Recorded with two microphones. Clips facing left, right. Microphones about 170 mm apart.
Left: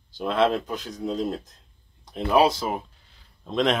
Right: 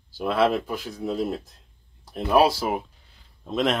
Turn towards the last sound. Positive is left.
turn(degrees=-5)  # may be behind; listen again after turning